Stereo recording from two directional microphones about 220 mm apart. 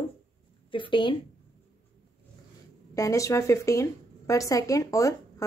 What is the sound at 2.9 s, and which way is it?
Speech, 15° left (ahead or behind).